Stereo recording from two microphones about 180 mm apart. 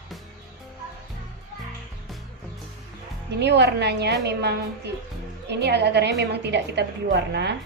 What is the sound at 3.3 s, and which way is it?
A woman's voice, 70° right (ahead or behind).